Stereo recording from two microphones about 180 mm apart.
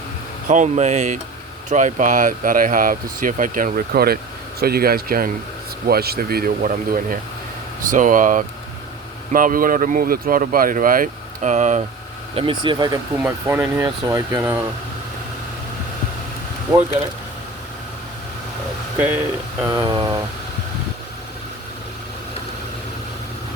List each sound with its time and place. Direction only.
0.4 s speech: 45° right (ahead or behind)
12.3 s speech: 30° right (ahead or behind); by 14.6 s 15° right (ahead or behind)
18.9 s speech: 10° right (ahead or behind)
19.6 s speech: 25° right (ahead or behind)